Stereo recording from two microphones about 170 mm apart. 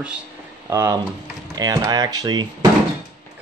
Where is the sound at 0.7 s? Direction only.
20° right (ahead or behind).